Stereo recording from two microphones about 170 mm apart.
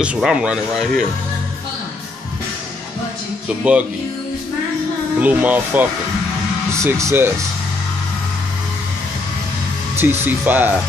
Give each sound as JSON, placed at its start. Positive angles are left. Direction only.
{"t": 0.0, "sound": "speech", "side_deg": -5}
{"t": 3.6, "sound": "speech", "side_deg": -10}
{"t": 5.2, "sound": "speech", "side_deg": -10}
{"t": 9.9, "sound": "speech", "side_deg": -10}